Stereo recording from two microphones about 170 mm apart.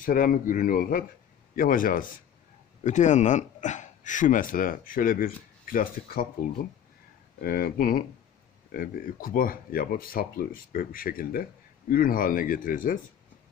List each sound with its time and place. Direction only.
0.0 s speech: 55° left (ahead or behind)
7.4 s speech: 60° left (ahead or behind)